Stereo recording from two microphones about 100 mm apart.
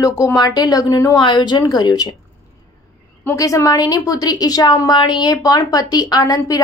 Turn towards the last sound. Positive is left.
turn(degrees=35)  # may be behind; listen again after turning